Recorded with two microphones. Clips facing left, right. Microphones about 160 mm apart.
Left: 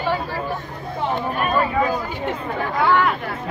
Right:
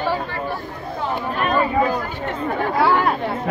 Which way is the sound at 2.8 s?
35° right (ahead or behind).